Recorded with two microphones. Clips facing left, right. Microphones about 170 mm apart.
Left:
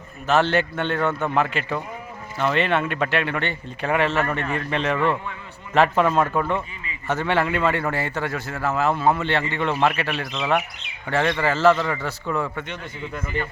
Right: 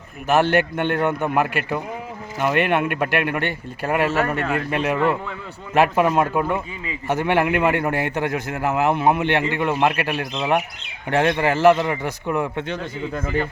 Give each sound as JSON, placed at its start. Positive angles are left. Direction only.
{"t": 0.3, "sound": "a man's voice", "side_deg": -10}